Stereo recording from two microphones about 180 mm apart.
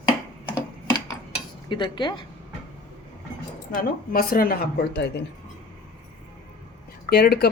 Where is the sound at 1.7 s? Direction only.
25° left (ahead or behind).